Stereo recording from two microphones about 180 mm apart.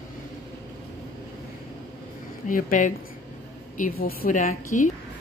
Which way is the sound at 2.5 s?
45° left (ahead or behind).